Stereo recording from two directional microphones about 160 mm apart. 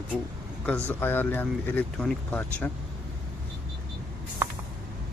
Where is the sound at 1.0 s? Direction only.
10° left (ahead or behind).